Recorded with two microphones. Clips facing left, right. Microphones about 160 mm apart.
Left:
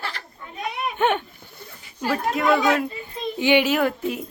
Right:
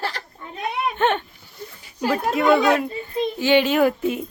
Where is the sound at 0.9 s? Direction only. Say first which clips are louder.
Even; 10° left (ahead or behind).